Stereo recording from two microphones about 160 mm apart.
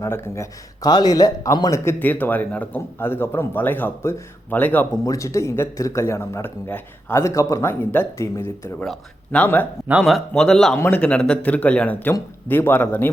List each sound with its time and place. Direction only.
0.0 s speech: 20° left (ahead or behind)
8.8 s speech: 5° left (ahead or behind)